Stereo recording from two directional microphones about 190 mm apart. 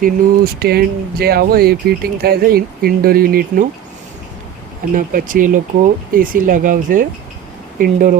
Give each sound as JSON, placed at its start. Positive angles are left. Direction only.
{"t": 0.0, "sound": "speech", "side_deg": -55}
{"t": 4.9, "sound": "speech", "side_deg": -45}